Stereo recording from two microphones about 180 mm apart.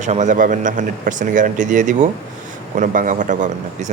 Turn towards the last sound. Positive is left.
turn(degrees=-40)  # may be behind; listen again after turning